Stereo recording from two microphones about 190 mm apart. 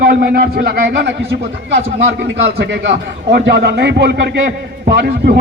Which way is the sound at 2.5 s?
60° right (ahead or behind).